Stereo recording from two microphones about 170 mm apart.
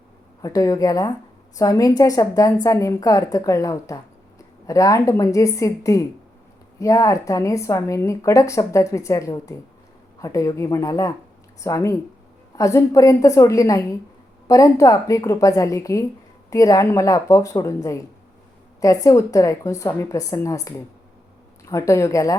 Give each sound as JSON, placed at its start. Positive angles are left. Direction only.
{"t": 0.4, "sound": "a woman's voice", "side_deg": 20}
{"t": 18.8, "sound": "a woman's voice", "side_deg": 20}